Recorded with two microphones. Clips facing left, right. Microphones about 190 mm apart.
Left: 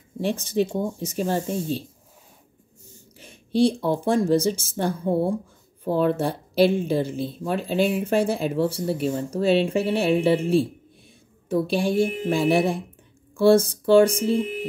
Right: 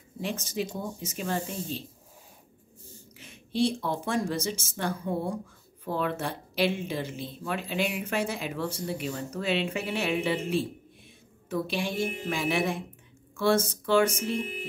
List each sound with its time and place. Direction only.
0.2 s speech: 30° left (ahead or behind)
3.6 s speech: 30° left (ahead or behind)